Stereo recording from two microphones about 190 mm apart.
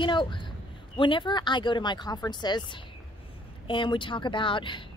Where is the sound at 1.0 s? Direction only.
25° left (ahead or behind).